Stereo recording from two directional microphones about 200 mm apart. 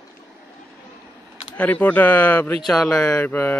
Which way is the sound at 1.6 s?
10° left (ahead or behind).